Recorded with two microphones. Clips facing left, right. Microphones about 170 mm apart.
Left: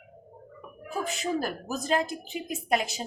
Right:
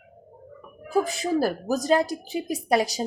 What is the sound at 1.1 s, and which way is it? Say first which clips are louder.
Speech: right 6 dB; 35° right (ahead or behind).